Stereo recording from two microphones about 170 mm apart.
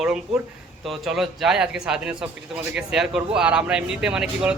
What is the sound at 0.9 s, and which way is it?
Speech, centre (ahead or behind).